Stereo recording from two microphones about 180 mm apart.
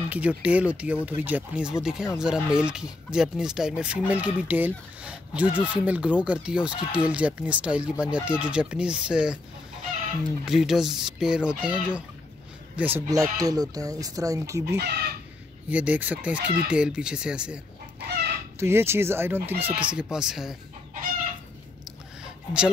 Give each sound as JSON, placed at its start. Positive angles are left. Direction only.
{"t": 0.1, "sound": "speech", "side_deg": -10}
{"t": 10.4, "sound": "speech", "side_deg": 0}
{"t": 12.7, "sound": "speech", "side_deg": -10}
{"t": 14.8, "sound": "speech", "side_deg": -60}
{"t": 15.7, "sound": "speech", "side_deg": -10}
{"t": 18.6, "sound": "speech", "side_deg": -15}
{"t": 22.2, "sound": "a sound", "side_deg": -5}